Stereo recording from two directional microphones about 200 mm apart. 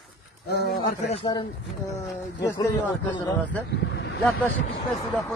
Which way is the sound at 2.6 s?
20° left (ahead or behind).